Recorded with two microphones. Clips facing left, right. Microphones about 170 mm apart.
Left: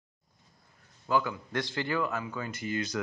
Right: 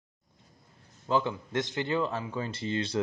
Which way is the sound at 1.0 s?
25° right (ahead or behind).